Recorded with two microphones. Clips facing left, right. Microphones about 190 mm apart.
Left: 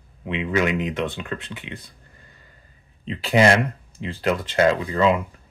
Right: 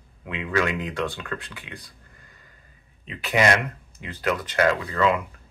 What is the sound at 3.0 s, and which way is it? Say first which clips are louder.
Speech: left 4 dB; 30° left (ahead or behind).